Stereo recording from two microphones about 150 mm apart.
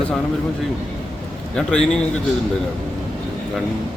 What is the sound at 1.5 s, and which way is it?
Speech, 5° left (ahead or behind).